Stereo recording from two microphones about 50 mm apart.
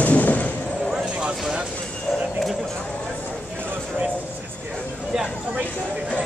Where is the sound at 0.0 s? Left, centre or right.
Left.